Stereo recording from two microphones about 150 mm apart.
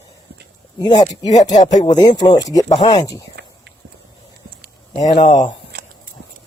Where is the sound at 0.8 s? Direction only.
30° left (ahead or behind).